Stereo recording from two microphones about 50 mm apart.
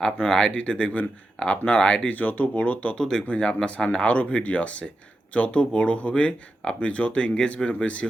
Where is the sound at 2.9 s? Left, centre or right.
Centre.